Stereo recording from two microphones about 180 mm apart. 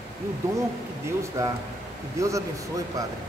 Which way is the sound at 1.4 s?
15° right (ahead or behind).